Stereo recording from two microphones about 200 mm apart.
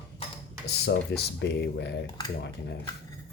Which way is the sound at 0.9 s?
55° left (ahead or behind).